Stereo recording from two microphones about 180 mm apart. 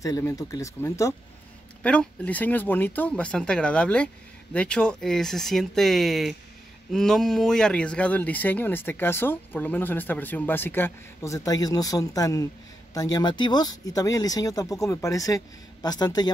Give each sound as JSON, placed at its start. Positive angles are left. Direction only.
{"t": 0.0, "sound": "speech", "side_deg": 15}
{"t": 1.8, "sound": "speech", "side_deg": 5}